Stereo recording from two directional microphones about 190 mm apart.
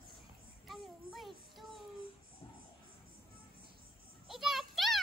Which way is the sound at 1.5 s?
Centre (ahead or behind).